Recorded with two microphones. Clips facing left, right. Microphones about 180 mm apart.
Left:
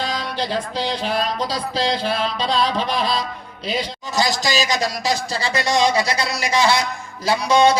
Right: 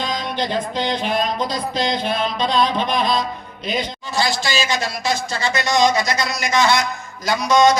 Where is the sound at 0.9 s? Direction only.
30° left (ahead or behind).